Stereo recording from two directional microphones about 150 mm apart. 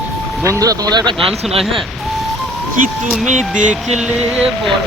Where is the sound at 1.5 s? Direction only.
40° right (ahead or behind).